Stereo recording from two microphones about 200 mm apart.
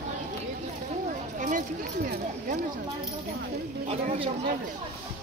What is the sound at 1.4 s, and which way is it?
Speech, 40° right (ahead or behind).